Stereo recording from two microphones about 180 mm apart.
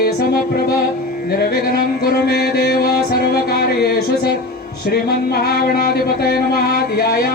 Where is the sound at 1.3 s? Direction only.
60° left (ahead or behind).